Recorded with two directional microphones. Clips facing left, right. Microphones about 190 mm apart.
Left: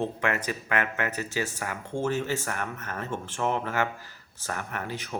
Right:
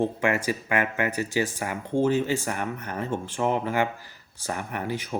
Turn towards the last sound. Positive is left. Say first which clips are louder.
# right 4 dB
turn(degrees=-10)  # may be behind; listen again after turning